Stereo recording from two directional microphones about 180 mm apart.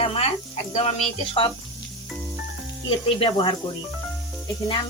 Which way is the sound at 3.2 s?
30° left (ahead or behind).